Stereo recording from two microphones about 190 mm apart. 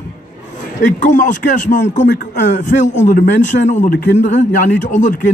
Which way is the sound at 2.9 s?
40° left (ahead or behind).